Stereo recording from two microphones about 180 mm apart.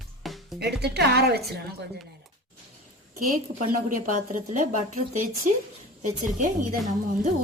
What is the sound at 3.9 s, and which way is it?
Speech, 45° right (ahead or behind).